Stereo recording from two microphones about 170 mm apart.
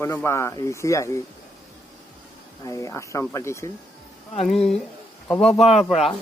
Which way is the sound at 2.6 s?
20° left (ahead or behind).